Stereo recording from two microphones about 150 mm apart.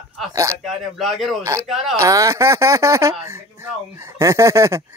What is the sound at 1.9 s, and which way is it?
Speech, 20° right (ahead or behind).